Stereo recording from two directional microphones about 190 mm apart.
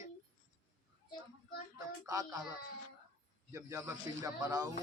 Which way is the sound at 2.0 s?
20° right (ahead or behind).